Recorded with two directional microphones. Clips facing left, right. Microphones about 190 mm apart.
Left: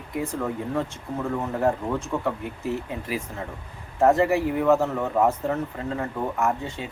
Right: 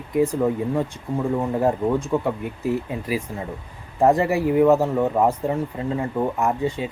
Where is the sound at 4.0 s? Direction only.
15° right (ahead or behind).